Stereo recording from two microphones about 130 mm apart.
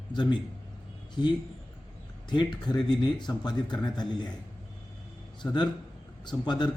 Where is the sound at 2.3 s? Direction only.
35° left (ahead or behind).